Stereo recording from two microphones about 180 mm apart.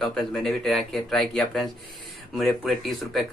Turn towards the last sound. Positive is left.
turn(degrees=0)  # may be behind; listen again after turning